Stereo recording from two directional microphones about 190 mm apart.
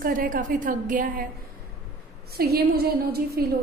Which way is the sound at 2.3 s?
55° right (ahead or behind).